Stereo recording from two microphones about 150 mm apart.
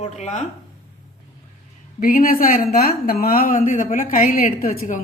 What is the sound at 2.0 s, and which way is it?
A woman's voice, 70° left (ahead or behind).